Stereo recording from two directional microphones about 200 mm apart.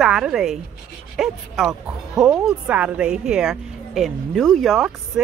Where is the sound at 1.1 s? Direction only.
Centre (ahead or behind).